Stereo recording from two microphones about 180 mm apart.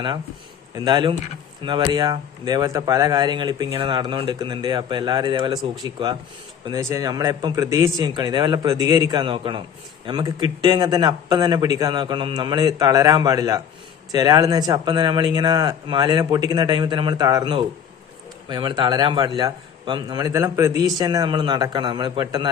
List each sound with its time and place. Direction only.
0.8 s a man's voice: 25° right (ahead or behind)